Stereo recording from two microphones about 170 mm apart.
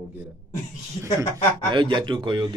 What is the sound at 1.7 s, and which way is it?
Speech, 25° right (ahead or behind).